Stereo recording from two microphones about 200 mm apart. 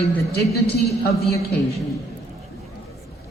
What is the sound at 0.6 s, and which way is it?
Speech, 50° left (ahead or behind).